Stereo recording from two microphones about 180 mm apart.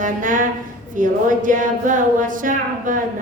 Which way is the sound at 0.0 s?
45° right (ahead or behind).